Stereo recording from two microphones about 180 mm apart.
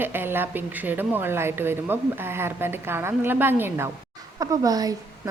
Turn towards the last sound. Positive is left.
turn(degrees=-20)  # may be behind; listen again after turning